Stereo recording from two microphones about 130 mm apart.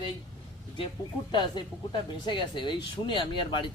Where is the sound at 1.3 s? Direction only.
35° left (ahead or behind).